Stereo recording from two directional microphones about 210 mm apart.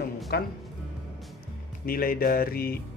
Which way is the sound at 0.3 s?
50° left (ahead or behind).